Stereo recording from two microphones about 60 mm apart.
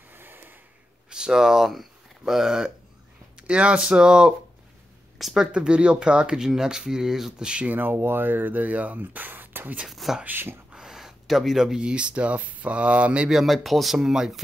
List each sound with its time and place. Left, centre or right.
0.1 s snort: right
1.1 s speech: centre
3.3 s speech: centre
5.5 s speech: centre
7.7 s speech: right
9.8 s speech: centre
10.2 s speech: right
10.7 s speech: centre
13.3 s speech: centre